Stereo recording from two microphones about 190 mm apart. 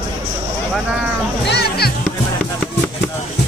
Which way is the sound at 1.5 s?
55° left (ahead or behind).